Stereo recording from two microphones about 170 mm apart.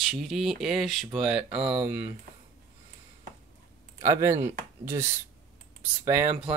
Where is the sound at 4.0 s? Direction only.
15° right (ahead or behind).